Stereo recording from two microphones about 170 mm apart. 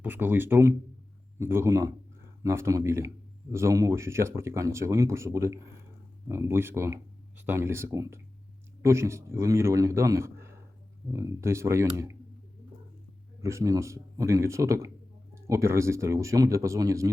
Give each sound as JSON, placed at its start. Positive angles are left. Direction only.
{"t": 0.0, "sound": "speech", "side_deg": -10}
{"t": 13.4, "sound": "speech", "side_deg": -15}